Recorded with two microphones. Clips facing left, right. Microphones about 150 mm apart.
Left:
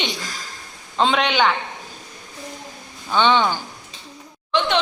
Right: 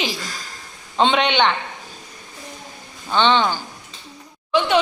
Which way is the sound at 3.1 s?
10° left (ahead or behind).